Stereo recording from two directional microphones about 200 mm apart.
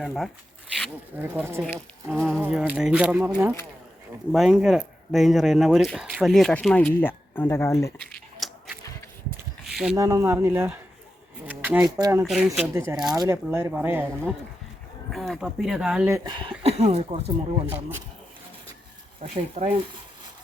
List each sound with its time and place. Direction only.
0.0 s speech: centre (ahead or behind)
1.6 s speech: 5° left (ahead or behind)
8.4 s a sound: centre (ahead or behind)
9.9 s speech: 15° right (ahead or behind)
12.2 s speech: centre (ahead or behind)
12.6 s speech: 15° right (ahead or behind)
15.1 s speech: centre (ahead or behind)
16.0 s speech: 20° right (ahead or behind)
19.2 s speech: 30° right (ahead or behind)